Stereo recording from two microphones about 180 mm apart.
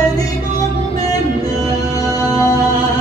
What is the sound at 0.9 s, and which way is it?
Music, 20° left (ahead or behind).